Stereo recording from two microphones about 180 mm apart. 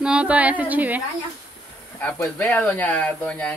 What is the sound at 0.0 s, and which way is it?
Speech, 5° right (ahead or behind).